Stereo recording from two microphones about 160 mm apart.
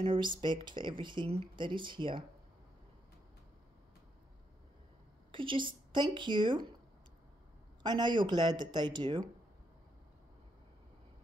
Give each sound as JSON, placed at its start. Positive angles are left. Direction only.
{"t": 0.0, "sound": "speech", "side_deg": -30}
{"t": 5.3, "sound": "speech", "side_deg": -30}
{"t": 7.8, "sound": "speech", "side_deg": -30}